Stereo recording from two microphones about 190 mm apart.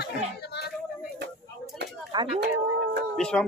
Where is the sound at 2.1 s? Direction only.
25° right (ahead or behind).